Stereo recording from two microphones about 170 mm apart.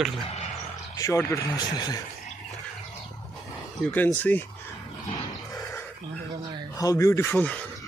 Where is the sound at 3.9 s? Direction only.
10° left (ahead or behind).